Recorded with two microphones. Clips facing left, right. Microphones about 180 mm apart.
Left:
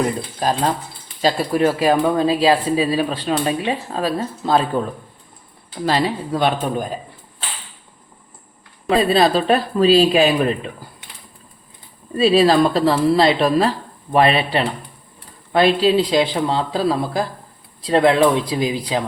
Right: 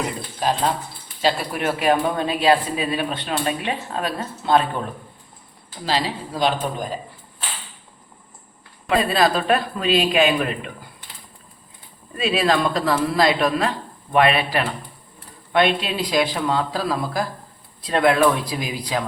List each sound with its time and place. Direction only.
0.3 s speech: 40° left (ahead or behind)
5.8 s speech: 55° left (ahead or behind)
8.9 s speech: 30° left (ahead or behind)
12.1 s speech: 35° left (ahead or behind)